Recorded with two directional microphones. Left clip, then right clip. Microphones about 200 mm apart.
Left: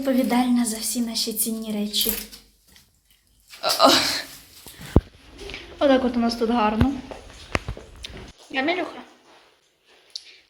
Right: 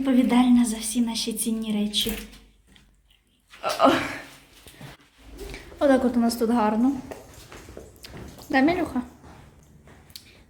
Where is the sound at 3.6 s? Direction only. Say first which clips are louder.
Left 3 dB; 5° left (ahead or behind).